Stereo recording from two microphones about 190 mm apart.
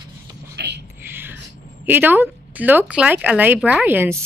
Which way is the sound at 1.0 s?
10° right (ahead or behind).